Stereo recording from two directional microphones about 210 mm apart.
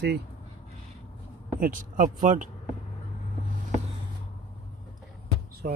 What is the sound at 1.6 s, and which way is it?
Speech, 40° right (ahead or behind).